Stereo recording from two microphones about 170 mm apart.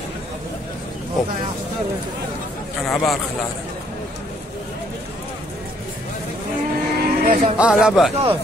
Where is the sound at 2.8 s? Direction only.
Centre (ahead or behind).